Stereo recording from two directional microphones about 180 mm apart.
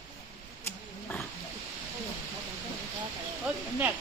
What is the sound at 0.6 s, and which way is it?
Wild animals, 10° left (ahead or behind).